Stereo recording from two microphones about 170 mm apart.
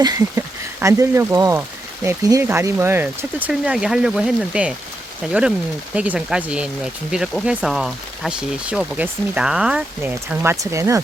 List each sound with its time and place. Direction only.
0.0 s speech: 20° right (ahead or behind)